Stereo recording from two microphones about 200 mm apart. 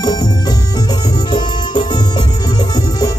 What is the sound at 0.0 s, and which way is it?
Music, 20° left (ahead or behind).